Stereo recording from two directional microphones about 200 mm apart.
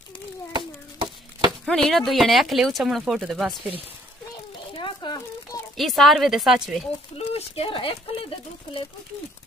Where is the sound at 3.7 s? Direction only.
30° right (ahead or behind).